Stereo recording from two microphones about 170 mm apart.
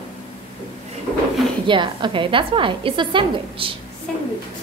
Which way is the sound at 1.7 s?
30° right (ahead or behind).